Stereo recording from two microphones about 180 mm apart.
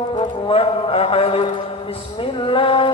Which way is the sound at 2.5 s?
30° left (ahead or behind).